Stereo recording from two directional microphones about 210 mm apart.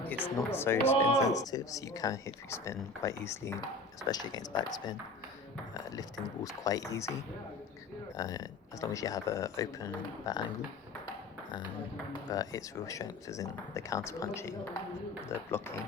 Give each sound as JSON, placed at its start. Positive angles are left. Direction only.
{"t": 0.1, "sound": "speech", "side_deg": 10}
{"t": 6.0, "sound": "speech", "side_deg": 15}
{"t": 8.1, "sound": "speech", "side_deg": 15}
{"t": 12.3, "sound": "speech", "side_deg": 15}